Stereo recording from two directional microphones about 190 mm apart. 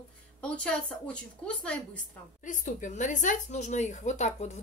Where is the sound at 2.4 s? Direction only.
40° left (ahead or behind).